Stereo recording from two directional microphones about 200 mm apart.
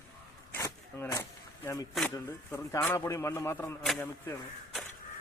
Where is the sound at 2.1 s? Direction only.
10° left (ahead or behind).